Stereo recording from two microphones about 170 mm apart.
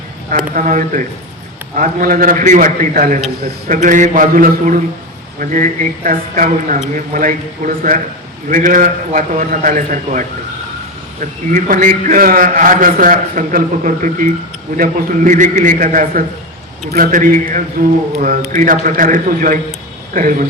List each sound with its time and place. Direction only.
0.3 s a man's voice: 50° right (ahead or behind)